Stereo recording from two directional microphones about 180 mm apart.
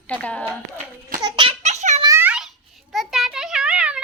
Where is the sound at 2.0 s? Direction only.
15° right (ahead or behind).